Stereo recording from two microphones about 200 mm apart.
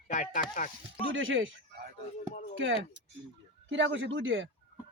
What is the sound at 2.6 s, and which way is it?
Speech, 65° right (ahead or behind).